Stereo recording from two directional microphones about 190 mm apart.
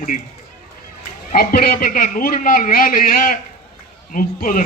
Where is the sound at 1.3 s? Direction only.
50° left (ahead or behind).